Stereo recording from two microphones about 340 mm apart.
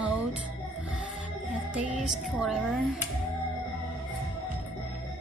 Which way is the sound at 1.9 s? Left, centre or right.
Centre.